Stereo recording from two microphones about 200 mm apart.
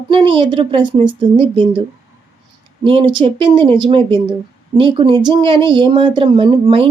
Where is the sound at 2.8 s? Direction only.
25° right (ahead or behind).